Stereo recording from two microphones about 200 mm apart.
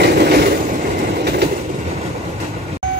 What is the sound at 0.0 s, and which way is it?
Vehicle, 55° right (ahead or behind).